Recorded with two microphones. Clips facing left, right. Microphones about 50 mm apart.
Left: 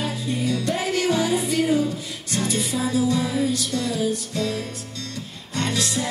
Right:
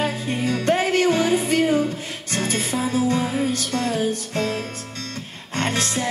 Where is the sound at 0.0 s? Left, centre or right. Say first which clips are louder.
Right 2 dB; right.